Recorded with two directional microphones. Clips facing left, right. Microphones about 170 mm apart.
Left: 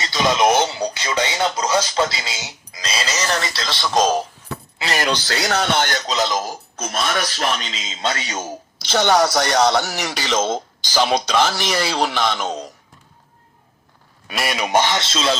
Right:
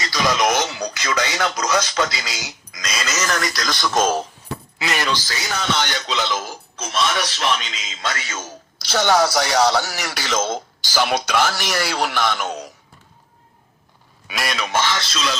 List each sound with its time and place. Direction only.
0.0 s speech: 25° left (ahead or behind)
4.9 s speech: 60° left (ahead or behind); by 9.2 s 15° left (ahead or behind)
9.2 s speech: 5° right (ahead or behind)
10.0 s speech: 15° left (ahead or behind)
12.4 s speech: 10° right (ahead or behind)
14.3 s speech: 5° left (ahead or behind)
14.7 s speech: 20° left (ahead or behind)